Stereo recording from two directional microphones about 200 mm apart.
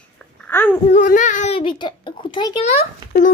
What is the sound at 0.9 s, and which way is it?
A child's voice, 40° left (ahead or behind).